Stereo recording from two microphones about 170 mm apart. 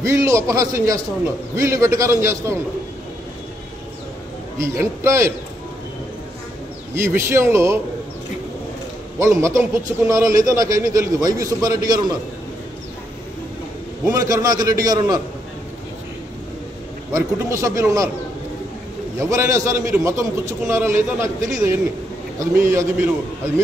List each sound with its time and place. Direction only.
0.0 s a man's voice: 20° right (ahead or behind)
4.6 s a man's voice: 15° right (ahead or behind)
7.0 s a man's voice: 15° right (ahead or behind)
9.2 s a man's voice: 20° right (ahead or behind)
14.1 s a man's voice: 20° right (ahead or behind)
17.1 s a man's voice: 15° right (ahead or behind)
19.1 s a man's voice: 15° right (ahead or behind)